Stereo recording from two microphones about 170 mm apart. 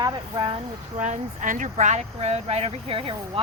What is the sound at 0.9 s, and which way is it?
Speech, 45° right (ahead or behind).